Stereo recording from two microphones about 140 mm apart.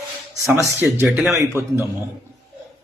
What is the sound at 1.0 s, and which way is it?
Speech, centre (ahead or behind).